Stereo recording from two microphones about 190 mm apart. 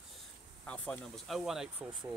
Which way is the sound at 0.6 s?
5° left (ahead or behind).